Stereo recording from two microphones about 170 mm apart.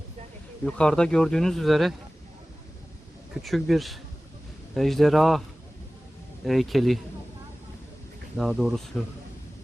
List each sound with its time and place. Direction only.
0.6 s speech: 5° left (ahead or behind)
3.4 s speech: centre (ahead or behind)
6.4 s speech: centre (ahead or behind)
8.4 s speech: centre (ahead or behind)